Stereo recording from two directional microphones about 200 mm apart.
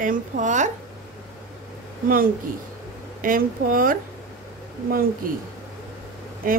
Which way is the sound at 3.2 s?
45° right (ahead or behind).